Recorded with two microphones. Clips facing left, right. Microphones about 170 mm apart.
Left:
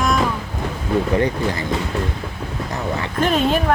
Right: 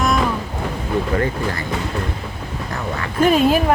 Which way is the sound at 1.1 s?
20° left (ahead or behind).